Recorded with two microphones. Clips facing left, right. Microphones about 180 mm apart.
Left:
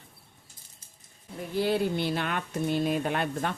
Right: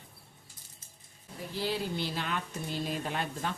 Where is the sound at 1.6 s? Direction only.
60° left (ahead or behind).